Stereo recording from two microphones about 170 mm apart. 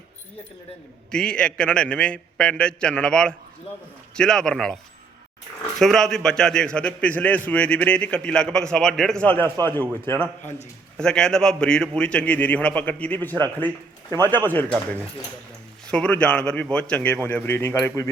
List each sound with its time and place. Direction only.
1.1 s a man's voice: 5° left (ahead or behind)
5.8 s a man's voice: centre (ahead or behind)
15.9 s a man's voice: 5° left (ahead or behind)